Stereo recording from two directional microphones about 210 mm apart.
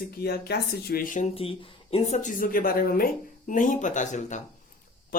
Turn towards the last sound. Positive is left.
turn(degrees=35)  # may be behind; listen again after turning